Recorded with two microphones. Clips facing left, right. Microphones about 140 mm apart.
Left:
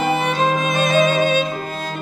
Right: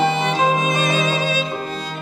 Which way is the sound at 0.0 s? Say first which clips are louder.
Even; 50° left (ahead or behind).